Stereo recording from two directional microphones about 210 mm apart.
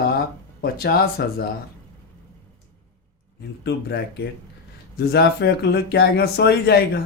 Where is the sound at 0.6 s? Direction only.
45° left (ahead or behind).